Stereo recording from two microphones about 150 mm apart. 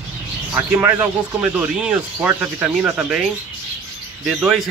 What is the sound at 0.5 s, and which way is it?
Speech, 15° right (ahead or behind).